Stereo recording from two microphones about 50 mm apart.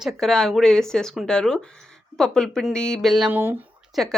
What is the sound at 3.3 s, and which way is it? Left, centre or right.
Speech, right.